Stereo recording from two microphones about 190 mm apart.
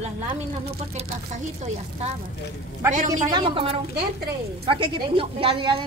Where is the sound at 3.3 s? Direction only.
25° right (ahead or behind).